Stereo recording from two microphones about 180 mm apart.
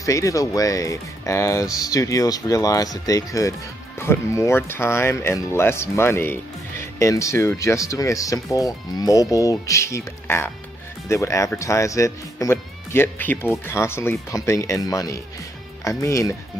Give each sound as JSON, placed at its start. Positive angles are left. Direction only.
{"t": 0.0, "sound": "speech", "side_deg": 15}